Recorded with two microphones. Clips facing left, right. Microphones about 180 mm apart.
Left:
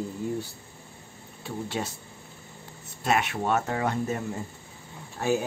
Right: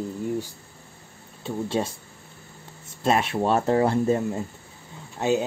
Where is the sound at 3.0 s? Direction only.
30° right (ahead or behind).